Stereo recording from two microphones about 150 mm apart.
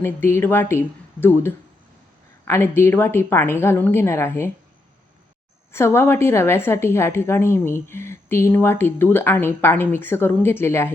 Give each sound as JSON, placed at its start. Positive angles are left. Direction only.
{"t": 0.0, "sound": "a woman's voice", "side_deg": 15}
{"t": 5.7, "sound": "a woman's voice", "side_deg": 15}